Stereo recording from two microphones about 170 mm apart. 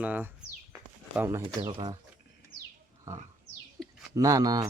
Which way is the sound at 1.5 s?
25° right (ahead or behind).